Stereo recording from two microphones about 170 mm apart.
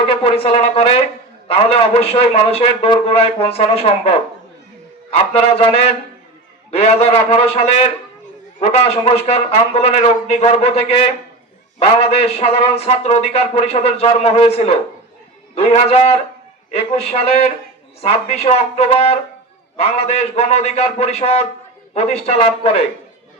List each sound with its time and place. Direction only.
0.0 s a man's voice: 35° left (ahead or behind)
5.1 s a man's voice: 35° left (ahead or behind)